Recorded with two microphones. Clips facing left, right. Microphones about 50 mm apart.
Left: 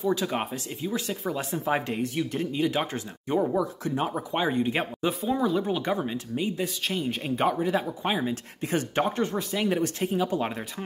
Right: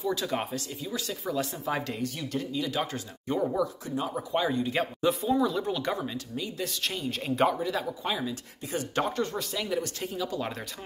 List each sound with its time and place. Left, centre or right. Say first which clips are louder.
0.0 s speech: left 3 dB; centre
0.7 s speech: left 4 dB; left
3.8 s speech: left 4 dB; left
4.1 s speech: left 1 dB; left
5.3 s speech: left 1 dB; centre
6.0 s speech: left 5 dB; left
6.6 s speech: left 3 dB; centre
7.6 s speech: left 4 dB; left
8.5 s speech: left 6 dB; left
8.9 s speech: even; left
9.6 s speech: left 6 dB; left